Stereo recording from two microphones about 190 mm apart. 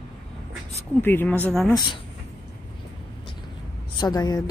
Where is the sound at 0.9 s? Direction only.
10° left (ahead or behind).